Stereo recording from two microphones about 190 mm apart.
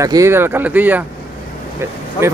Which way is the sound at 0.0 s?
15° right (ahead or behind).